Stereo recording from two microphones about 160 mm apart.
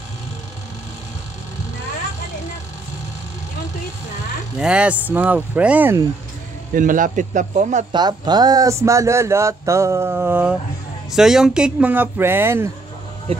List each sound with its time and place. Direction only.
4.6 s speech: 5° right (ahead or behind)
6.7 s a man's voice: 55° right (ahead or behind)
7.9 s speech: 25° right (ahead or behind)
13.3 s speech: 35° right (ahead or behind)